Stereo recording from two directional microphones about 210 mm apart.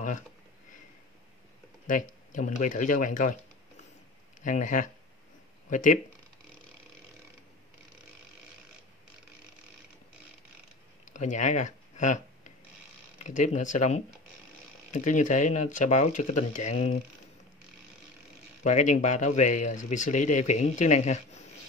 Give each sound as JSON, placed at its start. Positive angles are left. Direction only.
{"t": 1.9, "sound": "speech", "side_deg": 40}
{"t": 4.4, "sound": "speech", "side_deg": 35}
{"t": 11.1, "sound": "a sound", "side_deg": 35}
{"t": 13.2, "sound": "speech", "side_deg": 35}
{"t": 18.6, "sound": "speech", "side_deg": 35}